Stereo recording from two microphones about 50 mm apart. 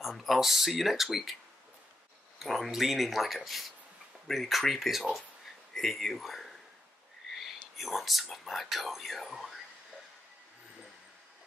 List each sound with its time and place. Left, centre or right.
0.0 s speech: centre
2.3 s speech: centre
7.3 s whispering: centre
7.7 s speech: centre